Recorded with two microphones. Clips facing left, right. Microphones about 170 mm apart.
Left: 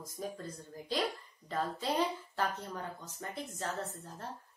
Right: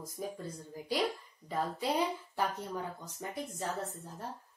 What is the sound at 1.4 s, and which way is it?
Speech, 10° right (ahead or behind).